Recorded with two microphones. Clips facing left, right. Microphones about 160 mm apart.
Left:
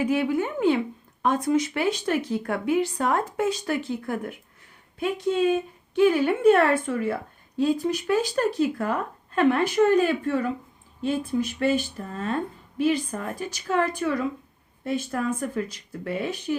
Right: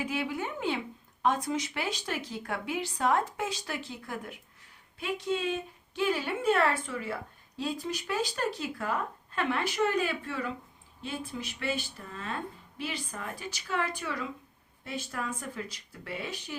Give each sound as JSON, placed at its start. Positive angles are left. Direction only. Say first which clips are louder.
{"t": 0.0, "sound": "a woman's voice", "louder": "left 9 dB", "side_deg": 50}